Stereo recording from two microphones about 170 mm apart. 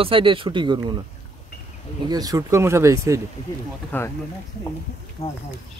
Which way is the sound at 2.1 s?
20° right (ahead or behind).